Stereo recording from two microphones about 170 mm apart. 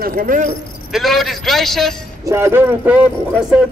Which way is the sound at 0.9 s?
Centre (ahead or behind).